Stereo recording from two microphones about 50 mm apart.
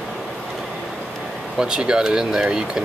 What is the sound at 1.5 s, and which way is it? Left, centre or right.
Speech, centre.